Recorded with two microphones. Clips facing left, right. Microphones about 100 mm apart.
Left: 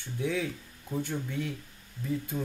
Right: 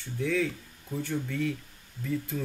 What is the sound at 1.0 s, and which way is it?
Speech, 20° left (ahead or behind).